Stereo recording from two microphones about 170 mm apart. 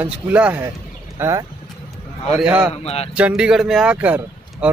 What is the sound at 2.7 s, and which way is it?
Speech, 35° left (ahead or behind).